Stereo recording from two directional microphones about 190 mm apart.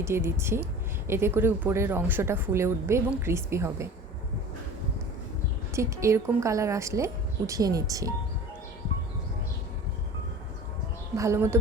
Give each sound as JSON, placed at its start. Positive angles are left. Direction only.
{"t": 0.0, "sound": "a woman's voice", "side_deg": -15}
{"t": 5.7, "sound": "a woman's voice", "side_deg": -15}
{"t": 11.2, "sound": "a woman's voice", "side_deg": -15}